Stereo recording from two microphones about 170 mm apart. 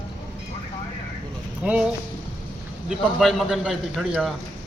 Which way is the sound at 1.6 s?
10° right (ahead or behind).